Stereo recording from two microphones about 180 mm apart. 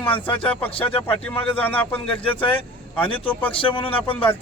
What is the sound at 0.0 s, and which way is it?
Speech, 30° left (ahead or behind).